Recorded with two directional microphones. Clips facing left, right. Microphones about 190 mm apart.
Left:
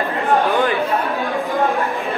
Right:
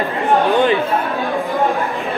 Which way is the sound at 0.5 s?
15° right (ahead or behind).